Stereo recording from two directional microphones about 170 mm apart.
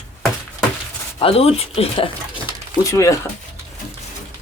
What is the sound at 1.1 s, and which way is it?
Speech, 35° left (ahead or behind).